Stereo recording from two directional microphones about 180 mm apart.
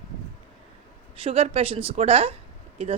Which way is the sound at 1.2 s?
35° right (ahead or behind).